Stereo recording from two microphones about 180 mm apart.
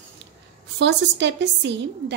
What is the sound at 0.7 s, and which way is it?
Speech, 75° right (ahead or behind).